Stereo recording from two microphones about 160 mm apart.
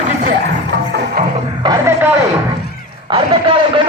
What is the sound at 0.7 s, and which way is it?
Music, 90° right.